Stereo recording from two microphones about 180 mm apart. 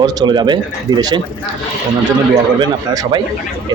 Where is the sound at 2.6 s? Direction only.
25° right (ahead or behind).